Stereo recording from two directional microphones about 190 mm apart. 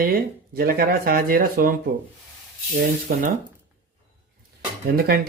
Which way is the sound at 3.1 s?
50° right (ahead or behind).